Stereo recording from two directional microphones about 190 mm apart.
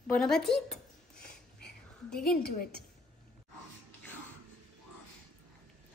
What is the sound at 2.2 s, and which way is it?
Speech, 55° left (ahead or behind).